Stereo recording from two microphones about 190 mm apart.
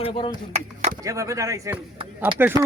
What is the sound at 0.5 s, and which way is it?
Speech, 35° right (ahead or behind).